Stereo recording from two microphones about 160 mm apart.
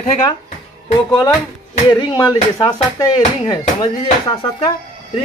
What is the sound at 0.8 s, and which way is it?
Speech, 25° left (ahead or behind).